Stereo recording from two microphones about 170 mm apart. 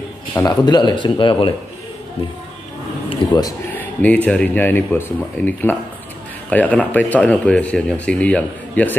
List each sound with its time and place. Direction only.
0.3 s speech: 20° left (ahead or behind)
3.1 s speech: 20° left (ahead or behind)
3.7 s speech: 10° left (ahead or behind)